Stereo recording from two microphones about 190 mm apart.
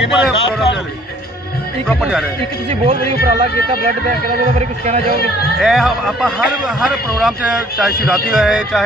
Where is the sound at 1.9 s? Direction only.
5° right (ahead or behind).